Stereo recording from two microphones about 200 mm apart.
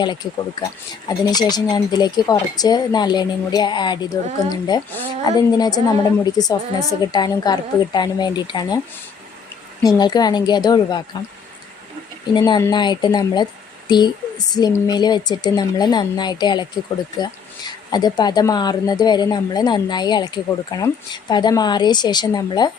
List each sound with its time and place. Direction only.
0.0 s speech: 20° left (ahead or behind)
9.8 s speech: 20° left (ahead or behind)
12.3 s speech: 20° left (ahead or behind)